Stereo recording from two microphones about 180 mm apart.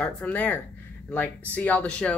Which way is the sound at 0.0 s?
10° left (ahead or behind).